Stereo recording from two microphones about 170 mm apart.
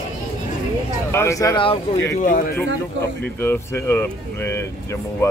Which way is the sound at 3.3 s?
15° left (ahead or behind).